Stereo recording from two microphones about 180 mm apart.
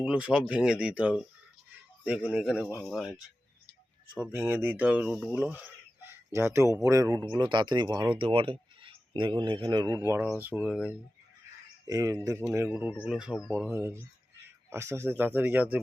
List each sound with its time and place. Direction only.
0.0 s speech: 5° right (ahead or behind)
4.2 s speech: 10° right (ahead or behind)
11.9 s speech: 20° right (ahead or behind)